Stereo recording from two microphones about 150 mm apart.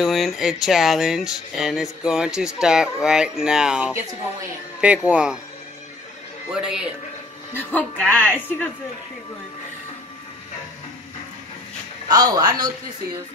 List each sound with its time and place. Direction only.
0.0 s speech: centre (ahead or behind)
6.5 s speech: 5° right (ahead or behind)
7.5 s a woman's voice: 10° left (ahead or behind)
12.1 s speech: 25° right (ahead or behind)